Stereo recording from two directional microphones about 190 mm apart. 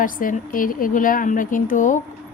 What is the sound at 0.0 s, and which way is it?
A woman's voice, 45° left (ahead or behind).